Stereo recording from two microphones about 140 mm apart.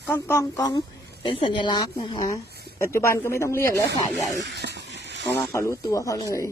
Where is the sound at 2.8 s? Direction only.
20° left (ahead or behind).